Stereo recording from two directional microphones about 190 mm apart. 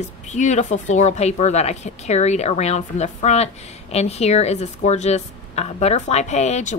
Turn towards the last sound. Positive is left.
turn(degrees=35)  # may be behind; listen again after turning